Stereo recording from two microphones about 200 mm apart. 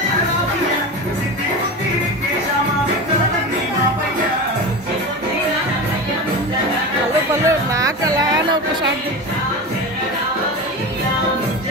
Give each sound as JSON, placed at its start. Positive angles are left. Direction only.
{"t": 7.4, "sound": "music", "side_deg": -15}